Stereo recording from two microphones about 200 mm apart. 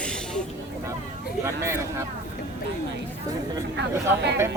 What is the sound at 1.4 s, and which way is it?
Speech, 15° right (ahead or behind).